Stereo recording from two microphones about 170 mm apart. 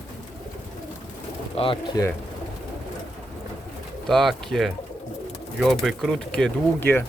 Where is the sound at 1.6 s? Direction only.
30° left (ahead or behind).